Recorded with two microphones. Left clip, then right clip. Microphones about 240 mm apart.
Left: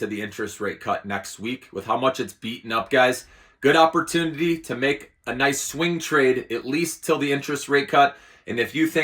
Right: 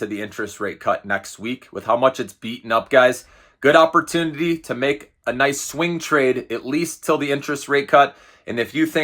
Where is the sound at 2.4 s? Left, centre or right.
Right.